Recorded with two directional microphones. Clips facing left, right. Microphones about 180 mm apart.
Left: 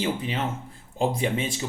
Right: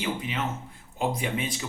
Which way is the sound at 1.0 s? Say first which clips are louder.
Left 3 dB; 30° left (ahead or behind).